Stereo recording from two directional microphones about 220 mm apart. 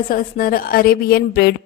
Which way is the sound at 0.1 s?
40° left (ahead or behind).